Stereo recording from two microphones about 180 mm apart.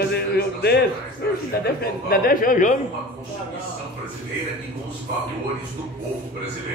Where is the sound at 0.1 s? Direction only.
60° left (ahead or behind).